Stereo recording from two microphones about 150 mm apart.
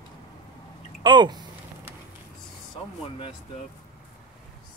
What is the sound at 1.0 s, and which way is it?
Speech, 30° right (ahead or behind).